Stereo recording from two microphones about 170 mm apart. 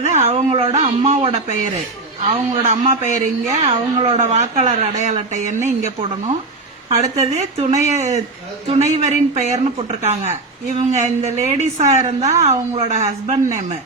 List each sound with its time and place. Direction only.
0.0 s speech: 40° right (ahead or behind)